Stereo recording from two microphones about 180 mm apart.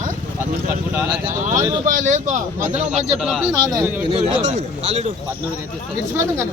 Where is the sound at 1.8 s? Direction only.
45° right (ahead or behind).